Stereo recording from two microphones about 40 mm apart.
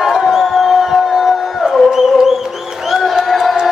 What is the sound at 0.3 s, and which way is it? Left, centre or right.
Crowd, centre.